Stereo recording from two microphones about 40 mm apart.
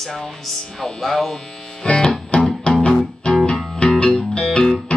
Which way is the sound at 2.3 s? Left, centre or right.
Left.